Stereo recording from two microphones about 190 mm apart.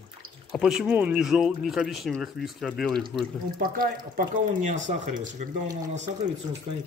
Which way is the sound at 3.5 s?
50° right (ahead or behind).